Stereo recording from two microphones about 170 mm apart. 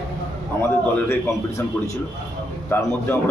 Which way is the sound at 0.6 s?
10° left (ahead or behind).